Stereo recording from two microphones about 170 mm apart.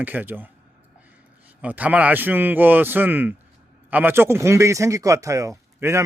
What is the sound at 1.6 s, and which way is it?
Speech, 10° right (ahead or behind).